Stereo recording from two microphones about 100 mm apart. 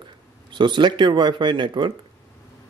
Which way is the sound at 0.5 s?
50° right (ahead or behind).